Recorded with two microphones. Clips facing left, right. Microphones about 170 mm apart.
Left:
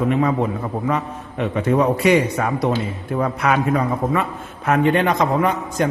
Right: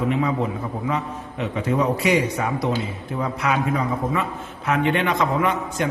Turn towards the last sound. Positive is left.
turn(degrees=40)  # may be behind; listen again after turning